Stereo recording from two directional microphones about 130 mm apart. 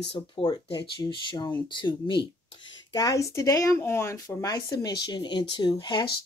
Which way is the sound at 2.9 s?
25° left (ahead or behind).